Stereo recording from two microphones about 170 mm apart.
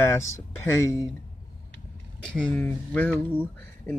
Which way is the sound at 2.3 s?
10° left (ahead or behind).